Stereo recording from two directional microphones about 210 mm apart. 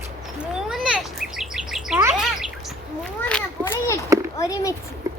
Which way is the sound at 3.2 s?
10° left (ahead or behind).